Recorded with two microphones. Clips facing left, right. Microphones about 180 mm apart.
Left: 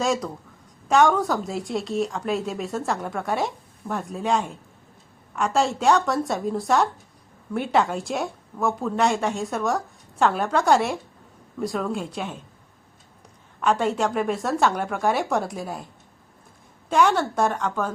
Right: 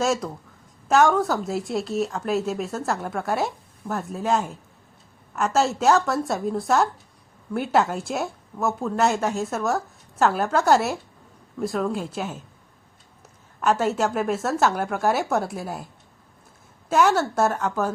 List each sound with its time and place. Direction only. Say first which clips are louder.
0.0 s a woman's voice: right 1 dB; centre (ahead or behind)
13.6 s a woman's voice: even; 5° right (ahead or behind)
16.9 s a woman's voice: even; 5° right (ahead or behind)